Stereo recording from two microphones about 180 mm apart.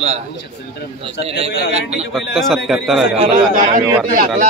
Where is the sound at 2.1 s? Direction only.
Centre (ahead or behind).